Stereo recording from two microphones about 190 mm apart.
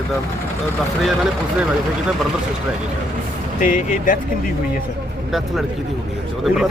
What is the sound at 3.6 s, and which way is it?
Speech, 45° left (ahead or behind).